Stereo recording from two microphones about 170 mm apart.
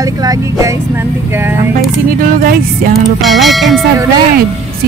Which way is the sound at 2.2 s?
55° right (ahead or behind).